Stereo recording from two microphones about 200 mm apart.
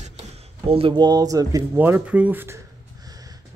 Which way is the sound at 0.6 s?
30° right (ahead or behind).